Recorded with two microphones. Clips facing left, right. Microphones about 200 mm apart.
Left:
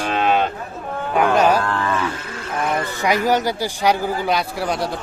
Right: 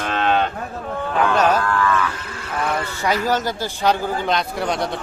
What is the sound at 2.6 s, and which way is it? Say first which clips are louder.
A man's voice: left 2 dB; 15° left (ahead or behind).